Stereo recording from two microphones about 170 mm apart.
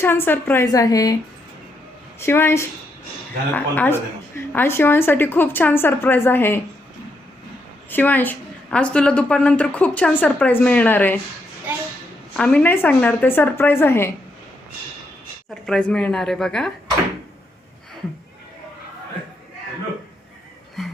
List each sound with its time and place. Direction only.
0.0 s a woman's voice: 15° left (ahead or behind)
2.1 s a woman's voice: 15° left (ahead or behind)
7.9 s a woman's voice: 10° left (ahead or behind)
12.4 s a woman's voice: 5° left (ahead or behind)
15.6 s speech: 5° left (ahead or behind)